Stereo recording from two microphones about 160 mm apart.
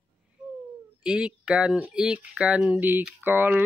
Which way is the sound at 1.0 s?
5° right (ahead or behind).